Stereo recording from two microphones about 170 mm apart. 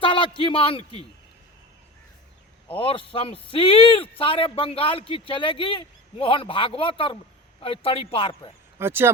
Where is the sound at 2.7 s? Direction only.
30° left (ahead or behind).